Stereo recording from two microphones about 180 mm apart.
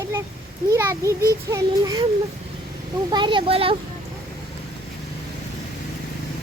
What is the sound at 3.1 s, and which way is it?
Speech, 25° right (ahead or behind).